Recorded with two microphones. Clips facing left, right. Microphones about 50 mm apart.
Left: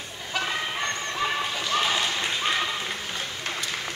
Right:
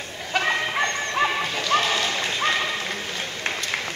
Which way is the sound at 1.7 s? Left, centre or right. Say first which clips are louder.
Right 4 dB; right.